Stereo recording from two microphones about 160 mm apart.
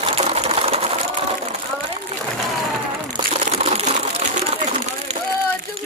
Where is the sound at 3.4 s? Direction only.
40° right (ahead or behind).